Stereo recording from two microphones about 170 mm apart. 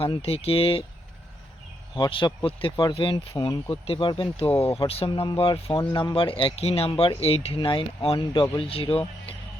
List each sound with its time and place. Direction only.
0.0 s speech: 35° left (ahead or behind)
2.0 s speech: 30° left (ahead or behind)